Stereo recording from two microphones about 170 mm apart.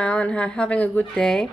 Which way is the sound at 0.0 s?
5° left (ahead or behind).